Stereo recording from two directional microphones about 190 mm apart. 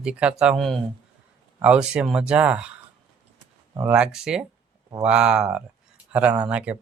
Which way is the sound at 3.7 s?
10° right (ahead or behind).